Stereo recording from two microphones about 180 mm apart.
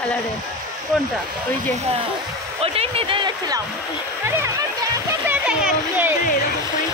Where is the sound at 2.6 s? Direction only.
35° right (ahead or behind).